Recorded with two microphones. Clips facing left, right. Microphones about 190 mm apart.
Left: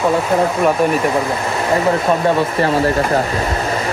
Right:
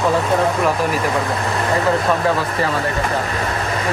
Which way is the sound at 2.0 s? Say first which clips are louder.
Left 3 dB; 25° left (ahead or behind).